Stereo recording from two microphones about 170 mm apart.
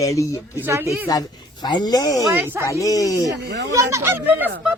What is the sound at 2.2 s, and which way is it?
Speech, 15° right (ahead or behind).